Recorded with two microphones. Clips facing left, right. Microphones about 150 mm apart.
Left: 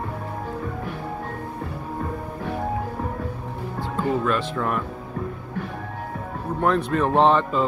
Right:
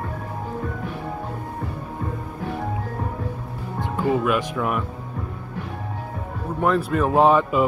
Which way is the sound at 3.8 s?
15° right (ahead or behind).